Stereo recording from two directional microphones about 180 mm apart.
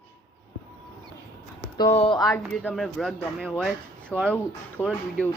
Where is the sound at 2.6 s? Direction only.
Centre (ahead or behind).